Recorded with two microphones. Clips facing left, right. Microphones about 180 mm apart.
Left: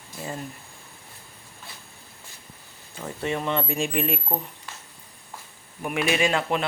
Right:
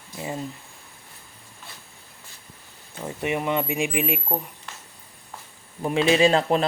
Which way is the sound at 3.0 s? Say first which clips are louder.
Right 2 dB; 15° right (ahead or behind).